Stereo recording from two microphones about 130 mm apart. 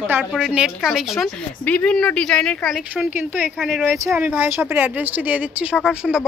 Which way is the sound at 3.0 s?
15° right (ahead or behind).